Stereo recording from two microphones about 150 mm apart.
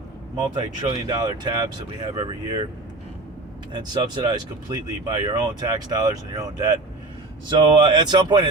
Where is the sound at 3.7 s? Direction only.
30° right (ahead or behind).